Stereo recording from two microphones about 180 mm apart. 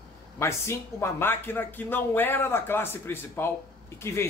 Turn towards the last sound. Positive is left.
turn(degrees=15)  # may be behind; listen again after turning